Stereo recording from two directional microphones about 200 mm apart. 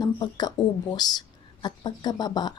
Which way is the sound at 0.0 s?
20° left (ahead or behind).